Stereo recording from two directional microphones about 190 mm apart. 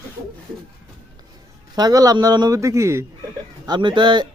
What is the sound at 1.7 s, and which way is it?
A man's voice, 20° right (ahead or behind).